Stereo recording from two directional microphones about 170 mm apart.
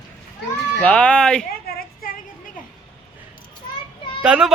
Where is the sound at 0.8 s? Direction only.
5° left (ahead or behind).